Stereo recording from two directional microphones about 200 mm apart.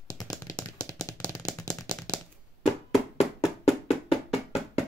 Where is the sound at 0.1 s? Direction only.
20° left (ahead or behind).